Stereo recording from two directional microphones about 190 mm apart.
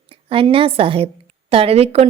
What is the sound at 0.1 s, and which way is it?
A woman's voice, 30° right (ahead or behind).